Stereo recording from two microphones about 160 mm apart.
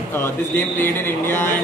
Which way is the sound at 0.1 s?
15° left (ahead or behind).